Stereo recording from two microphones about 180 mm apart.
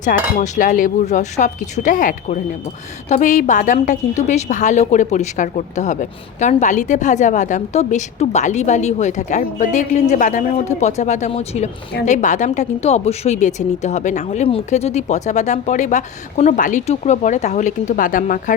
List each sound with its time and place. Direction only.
0.0 s cutlery: 40° left (ahead or behind)
3.1 s a woman's voice: 45° left (ahead or behind)